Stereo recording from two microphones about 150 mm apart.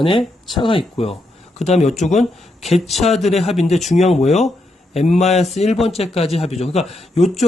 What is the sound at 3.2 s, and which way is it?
Speech, 45° left (ahead or behind).